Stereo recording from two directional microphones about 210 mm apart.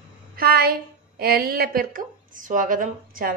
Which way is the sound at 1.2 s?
45° right (ahead or behind).